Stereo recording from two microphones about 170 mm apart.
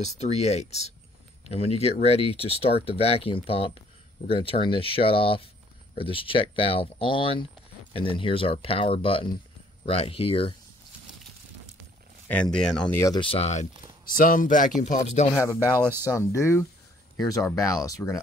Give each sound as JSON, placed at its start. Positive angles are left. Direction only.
{"t": 0.0, "sound": "speech", "side_deg": 40}
{"t": 12.5, "sound": "speech", "side_deg": 5}
{"t": 13.0, "sound": "speech", "side_deg": 25}
{"t": 15.6, "sound": "speech", "side_deg": -15}
{"t": 16.1, "sound": "speech", "side_deg": 15}